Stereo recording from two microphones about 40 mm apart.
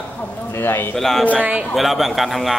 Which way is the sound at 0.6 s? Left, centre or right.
Left.